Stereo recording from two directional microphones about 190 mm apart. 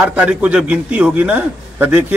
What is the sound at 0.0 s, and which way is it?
A man's voice, 5° right (ahead or behind).